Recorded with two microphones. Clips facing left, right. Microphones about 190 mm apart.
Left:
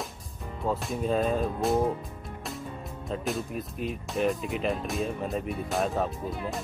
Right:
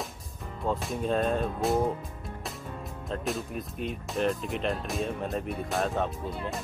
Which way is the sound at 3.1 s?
Centre (ahead or behind).